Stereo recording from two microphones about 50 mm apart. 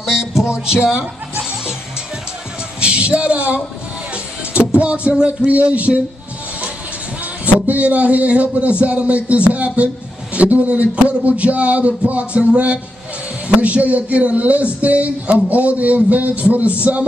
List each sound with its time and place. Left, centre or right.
0.7 s speech: centre
2.8 s a man's voice: right
7.4 s a man's voice: right